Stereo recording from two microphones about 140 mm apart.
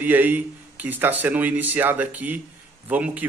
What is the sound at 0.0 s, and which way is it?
A man's voice, 10° right (ahead or behind).